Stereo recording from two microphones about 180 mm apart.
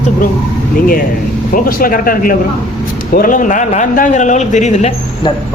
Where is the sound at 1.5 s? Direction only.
50° left (ahead or behind); by 5.3 s 35° left (ahead or behind).